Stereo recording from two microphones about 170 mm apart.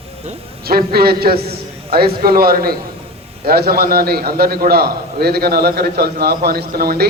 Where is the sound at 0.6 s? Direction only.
65° right (ahead or behind).